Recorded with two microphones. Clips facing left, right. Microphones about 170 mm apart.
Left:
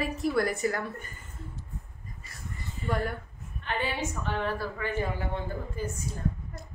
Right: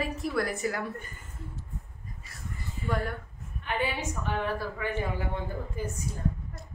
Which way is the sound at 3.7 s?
10° right (ahead or behind).